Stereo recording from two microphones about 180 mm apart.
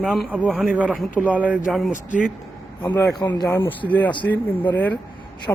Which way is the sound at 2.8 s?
15° left (ahead or behind).